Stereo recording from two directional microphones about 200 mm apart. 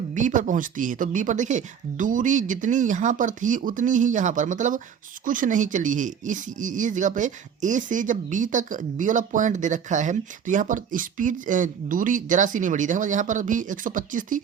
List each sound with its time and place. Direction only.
0.1 s speech: 40° right (ahead or behind)